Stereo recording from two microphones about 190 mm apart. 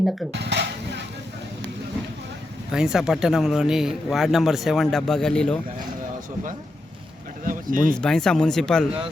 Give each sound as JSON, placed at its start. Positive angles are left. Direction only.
{"t": 0.3, "sound": "speech", "side_deg": -65}
{"t": 2.7, "sound": "speech", "side_deg": -5}
{"t": 7.4, "sound": "speech", "side_deg": -45}
{"t": 7.9, "sound": "speech", "side_deg": 5}